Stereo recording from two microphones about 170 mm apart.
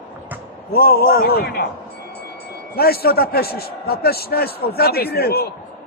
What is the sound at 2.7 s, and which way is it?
A man's voice, 65° left (ahead or behind).